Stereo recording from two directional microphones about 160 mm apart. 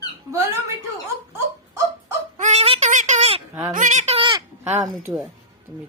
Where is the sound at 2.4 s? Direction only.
45° right (ahead or behind).